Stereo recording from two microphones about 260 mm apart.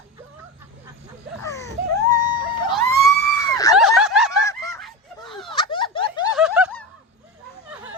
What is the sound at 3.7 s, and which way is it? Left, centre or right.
Snicker, centre.